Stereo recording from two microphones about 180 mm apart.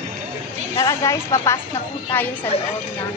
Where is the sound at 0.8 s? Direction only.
15° left (ahead or behind).